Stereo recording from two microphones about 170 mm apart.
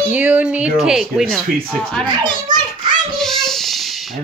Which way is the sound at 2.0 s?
25° right (ahead or behind).